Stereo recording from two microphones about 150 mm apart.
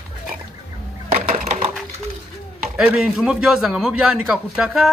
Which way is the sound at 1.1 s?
55° right (ahead or behind).